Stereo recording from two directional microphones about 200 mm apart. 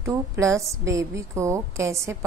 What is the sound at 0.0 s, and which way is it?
Speech, 15° right (ahead or behind).